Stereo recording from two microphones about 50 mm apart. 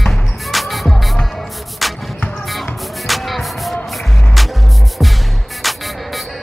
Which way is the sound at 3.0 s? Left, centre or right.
Centre.